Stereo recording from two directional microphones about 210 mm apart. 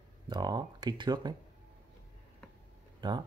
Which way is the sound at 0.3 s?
20° right (ahead or behind).